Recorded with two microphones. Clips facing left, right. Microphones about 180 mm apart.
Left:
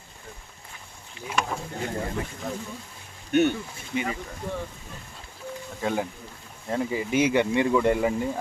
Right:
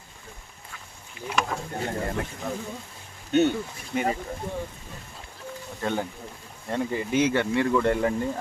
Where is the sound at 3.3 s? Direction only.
20° right (ahead or behind).